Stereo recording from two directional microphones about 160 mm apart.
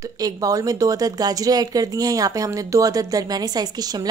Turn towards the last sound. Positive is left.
turn(degrees=-25)  # may be behind; listen again after turning